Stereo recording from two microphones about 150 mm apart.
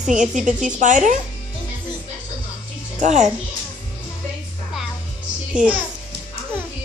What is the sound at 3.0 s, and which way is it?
Child singing, 50° right (ahead or behind).